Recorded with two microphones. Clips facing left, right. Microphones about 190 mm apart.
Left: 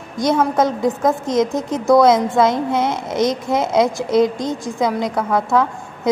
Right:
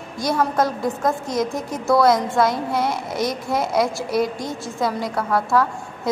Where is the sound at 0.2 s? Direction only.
20° left (ahead or behind).